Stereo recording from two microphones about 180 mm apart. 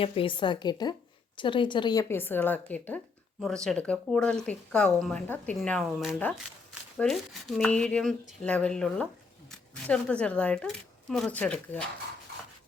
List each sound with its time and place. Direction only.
0.0 s speech: 30° left (ahead or behind); by 11.8 s 10° left (ahead or behind)